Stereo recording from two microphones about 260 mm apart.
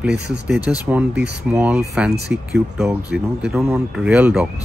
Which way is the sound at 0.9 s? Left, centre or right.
Centre.